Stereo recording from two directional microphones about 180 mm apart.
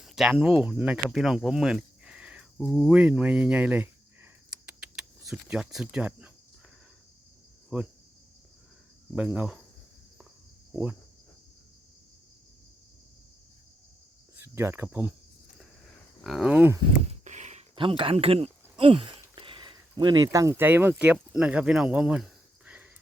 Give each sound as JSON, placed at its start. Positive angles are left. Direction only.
{"t": 0.0, "sound": "speech", "side_deg": -5}
{"t": 7.7, "sound": "speech", "side_deg": -5}
{"t": 9.1, "sound": "speech", "side_deg": -5}
{"t": 14.3, "sound": "speech", "side_deg": -15}
{"t": 16.2, "sound": "speech", "side_deg": 0}
{"t": 17.2, "sound": "a sound", "side_deg": -40}